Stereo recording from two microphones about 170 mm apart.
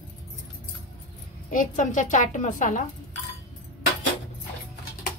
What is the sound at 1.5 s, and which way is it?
A child's voice, 50° left (ahead or behind).